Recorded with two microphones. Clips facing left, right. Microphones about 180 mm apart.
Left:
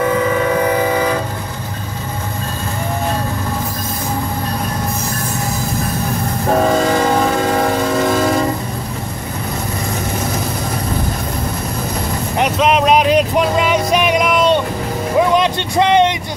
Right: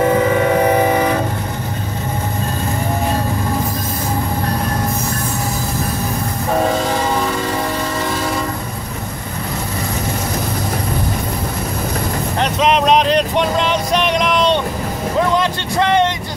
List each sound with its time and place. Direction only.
0.0 s train: 30° right (ahead or behind)
12.4 s a sound: 5° left (ahead or behind)
15.1 s music: 15° left (ahead or behind)